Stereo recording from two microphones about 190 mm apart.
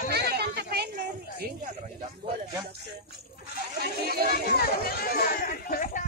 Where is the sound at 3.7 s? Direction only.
55° right (ahead or behind).